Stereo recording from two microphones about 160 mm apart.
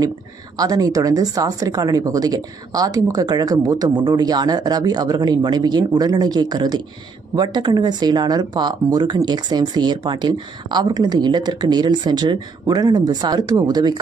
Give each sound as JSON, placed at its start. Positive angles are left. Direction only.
{"t": 0.6, "sound": "speech", "side_deg": -25}